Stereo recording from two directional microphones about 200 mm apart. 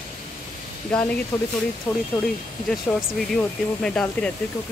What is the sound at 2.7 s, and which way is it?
Speech, centre (ahead or behind).